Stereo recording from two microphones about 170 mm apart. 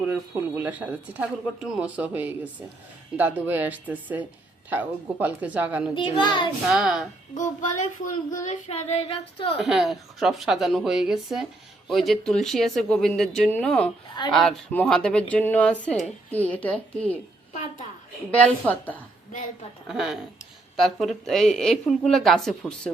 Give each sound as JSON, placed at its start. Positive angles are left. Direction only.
{"t": 0.0, "sound": "speech", "side_deg": -10}
{"t": 5.9, "sound": "a child's voice", "side_deg": 30}
{"t": 6.7, "sound": "a woman's voice", "side_deg": -5}
{"t": 8.3, "sound": "child singing", "side_deg": 45}
{"t": 9.6, "sound": "a woman's voice", "side_deg": 0}
{"t": 18.3, "sound": "a woman's voice", "side_deg": 10}
{"t": 19.9, "sound": "a woman's voice", "side_deg": 0}